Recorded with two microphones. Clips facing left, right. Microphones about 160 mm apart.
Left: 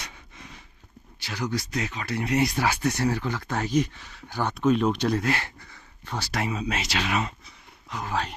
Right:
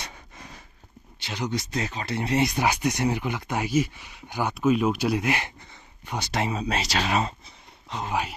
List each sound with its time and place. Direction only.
0.0 s a sound: 40° right (ahead or behind)
1.2 s speech: 20° right (ahead or behind)
6.6 s speech: 35° right (ahead or behind)